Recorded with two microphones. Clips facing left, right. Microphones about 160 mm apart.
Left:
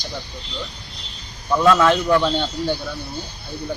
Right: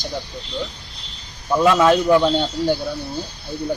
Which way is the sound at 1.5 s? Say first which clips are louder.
Right 1 dB; 20° right (ahead or behind).